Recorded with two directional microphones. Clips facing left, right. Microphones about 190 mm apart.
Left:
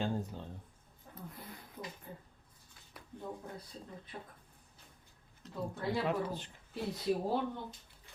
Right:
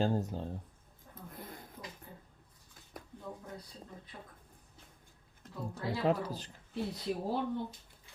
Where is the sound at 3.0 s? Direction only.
45° right (ahead or behind).